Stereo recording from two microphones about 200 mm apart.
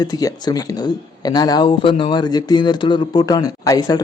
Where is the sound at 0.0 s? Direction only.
20° left (ahead or behind).